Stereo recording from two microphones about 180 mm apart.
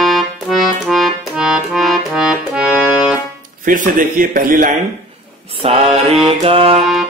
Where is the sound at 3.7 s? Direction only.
50° right (ahead or behind).